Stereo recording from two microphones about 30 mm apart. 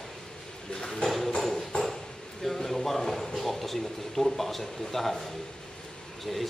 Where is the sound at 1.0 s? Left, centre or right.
Centre.